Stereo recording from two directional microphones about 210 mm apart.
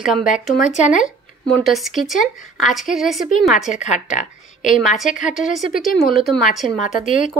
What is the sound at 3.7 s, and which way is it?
A woman's voice, 35° left (ahead or behind).